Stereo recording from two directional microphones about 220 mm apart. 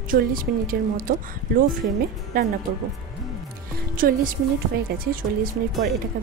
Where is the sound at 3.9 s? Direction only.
40° right (ahead or behind).